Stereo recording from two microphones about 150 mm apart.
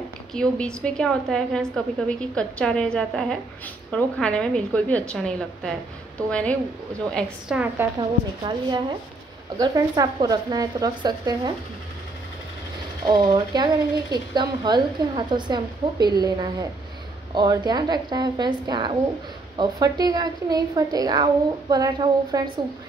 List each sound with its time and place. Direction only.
0.3 s a woman's voice: 5° left (ahead or behind)
7.4 s a woman's voice: 10° right (ahead or behind)
8.5 s a woman's voice: 30° right (ahead or behind)
13.0 s a woman's voice: 30° right (ahead or behind)